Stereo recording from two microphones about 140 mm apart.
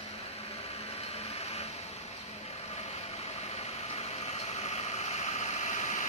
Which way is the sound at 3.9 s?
50° left (ahead or behind).